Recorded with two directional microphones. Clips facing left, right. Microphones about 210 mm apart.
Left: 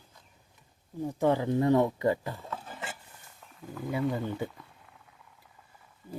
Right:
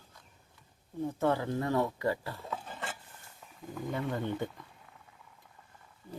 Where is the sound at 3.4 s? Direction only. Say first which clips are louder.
Even; 5° right (ahead or behind).